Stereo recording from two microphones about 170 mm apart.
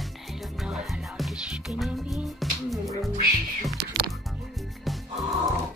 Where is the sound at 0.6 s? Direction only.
Centre (ahead or behind).